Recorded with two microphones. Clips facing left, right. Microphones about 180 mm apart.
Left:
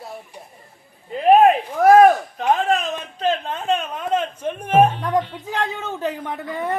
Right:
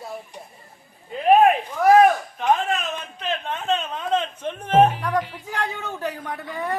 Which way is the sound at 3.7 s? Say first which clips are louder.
Left 2 dB; 10° left (ahead or behind).